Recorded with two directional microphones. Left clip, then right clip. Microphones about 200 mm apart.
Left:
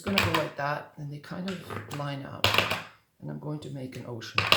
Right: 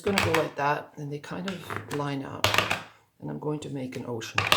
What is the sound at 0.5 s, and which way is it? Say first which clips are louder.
Rub: right 4 dB; 45° right (ahead or behind).